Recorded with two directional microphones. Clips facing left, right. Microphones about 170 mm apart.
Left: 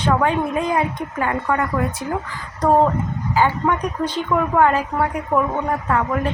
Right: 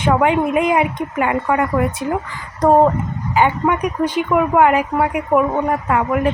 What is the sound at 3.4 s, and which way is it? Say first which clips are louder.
Speech: right 3 dB; 15° right (ahead or behind).